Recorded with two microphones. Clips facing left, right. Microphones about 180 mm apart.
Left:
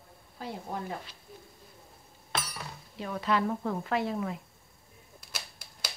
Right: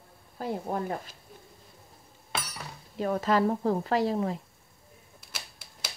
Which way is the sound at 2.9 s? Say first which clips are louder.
Right 4 dB; 45° right (ahead or behind).